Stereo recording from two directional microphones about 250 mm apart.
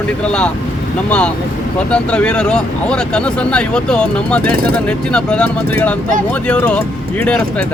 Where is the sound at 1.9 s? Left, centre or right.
Centre.